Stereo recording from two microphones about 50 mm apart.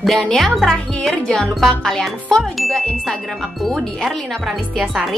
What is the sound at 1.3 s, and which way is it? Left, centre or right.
Music, centre.